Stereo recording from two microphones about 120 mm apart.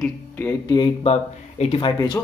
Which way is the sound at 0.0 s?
15° left (ahead or behind).